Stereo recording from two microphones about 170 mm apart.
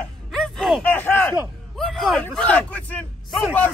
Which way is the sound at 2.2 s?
5° left (ahead or behind).